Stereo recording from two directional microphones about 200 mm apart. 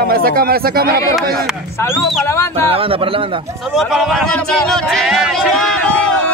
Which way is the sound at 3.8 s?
Centre (ahead or behind).